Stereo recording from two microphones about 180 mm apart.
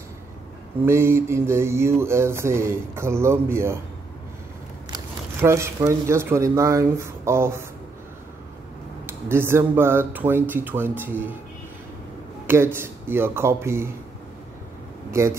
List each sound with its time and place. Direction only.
0.8 s mantra: 15° right (ahead or behind)
4.9 s speech: 15° right (ahead or behind)
9.0 s mantra: 15° right (ahead or behind)
12.4 s mantra: 10° right (ahead or behind)
15.0 s speech: 15° right (ahead or behind)